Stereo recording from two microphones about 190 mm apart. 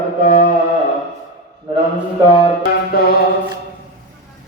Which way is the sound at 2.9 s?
55° left (ahead or behind).